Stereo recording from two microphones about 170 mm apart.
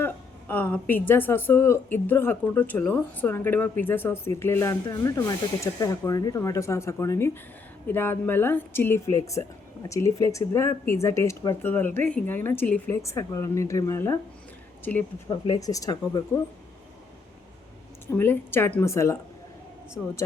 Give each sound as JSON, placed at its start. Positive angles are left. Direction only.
{"t": 0.0, "sound": "a woman's voice", "side_deg": 10}
{"t": 15.3, "sound": "speech", "side_deg": 25}
{"t": 18.1, "sound": "a woman's voice", "side_deg": 15}